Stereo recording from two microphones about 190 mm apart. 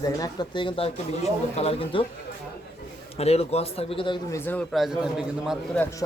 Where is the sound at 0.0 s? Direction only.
20° left (ahead or behind).